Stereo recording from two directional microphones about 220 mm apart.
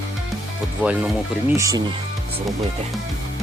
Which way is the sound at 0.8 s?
5° right (ahead or behind).